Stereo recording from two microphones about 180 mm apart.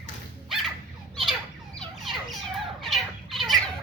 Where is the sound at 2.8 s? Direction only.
Centre (ahead or behind).